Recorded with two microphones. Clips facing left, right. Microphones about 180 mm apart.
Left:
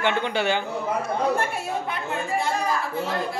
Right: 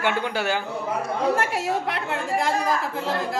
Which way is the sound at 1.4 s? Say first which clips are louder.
Right 3 dB; 90° right.